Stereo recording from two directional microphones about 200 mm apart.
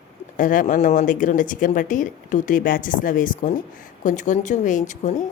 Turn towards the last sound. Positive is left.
turn(degrees=40)  # may be behind; listen again after turning